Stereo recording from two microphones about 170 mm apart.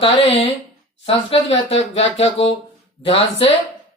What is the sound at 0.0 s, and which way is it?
Speech, 35° left (ahead or behind).